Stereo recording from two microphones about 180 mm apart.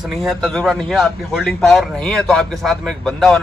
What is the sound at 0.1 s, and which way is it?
A man's voice, centre (ahead or behind).